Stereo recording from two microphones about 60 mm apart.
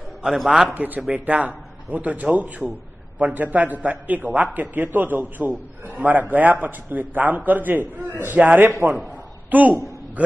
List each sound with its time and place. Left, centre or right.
0.2 s a man's voice: centre
0.7 s a man's voice: right
8.9 s a sound: right